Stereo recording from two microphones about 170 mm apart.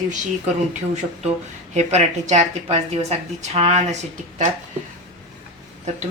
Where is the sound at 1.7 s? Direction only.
40° right (ahead or behind).